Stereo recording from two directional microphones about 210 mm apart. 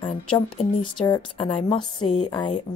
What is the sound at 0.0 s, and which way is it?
Speech, 25° left (ahead or behind).